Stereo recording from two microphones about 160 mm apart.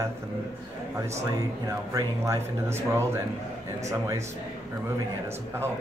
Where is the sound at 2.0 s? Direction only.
20° right (ahead or behind).